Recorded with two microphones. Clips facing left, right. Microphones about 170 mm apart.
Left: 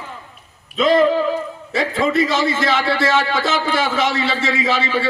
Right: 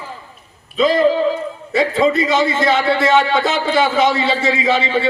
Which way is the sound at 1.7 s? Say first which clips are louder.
Right 4 dB; 25° right (ahead or behind).